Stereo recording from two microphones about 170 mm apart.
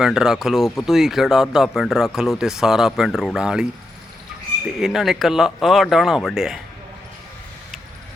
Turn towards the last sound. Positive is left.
turn(degrees=0)  # may be behind; listen again after turning